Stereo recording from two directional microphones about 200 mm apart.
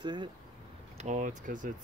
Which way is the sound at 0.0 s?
25° right (ahead or behind).